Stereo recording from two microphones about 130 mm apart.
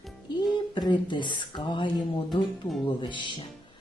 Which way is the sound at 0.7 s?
35° left (ahead or behind).